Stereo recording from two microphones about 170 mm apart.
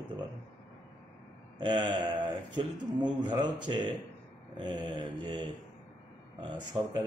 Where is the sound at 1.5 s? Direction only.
25° right (ahead or behind).